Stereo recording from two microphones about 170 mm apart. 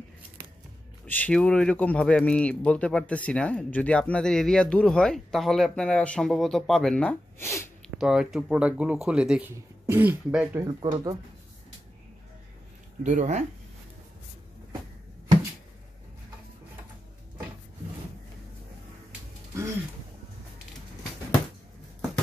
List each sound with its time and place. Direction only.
1.0 s a man's voice: 10° left (ahead or behind)
7.8 s speech: 5° right (ahead or behind)
10.6 s speech: 25° right (ahead or behind)
13.0 s speech: 45° right (ahead or behind)